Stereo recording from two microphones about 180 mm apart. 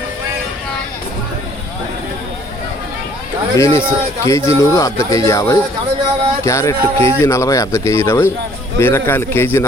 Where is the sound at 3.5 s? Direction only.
15° left (ahead or behind).